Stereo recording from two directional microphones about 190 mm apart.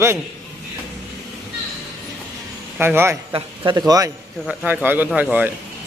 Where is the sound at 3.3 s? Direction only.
25° right (ahead or behind).